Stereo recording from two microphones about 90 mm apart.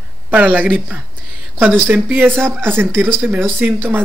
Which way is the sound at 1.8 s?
15° right (ahead or behind).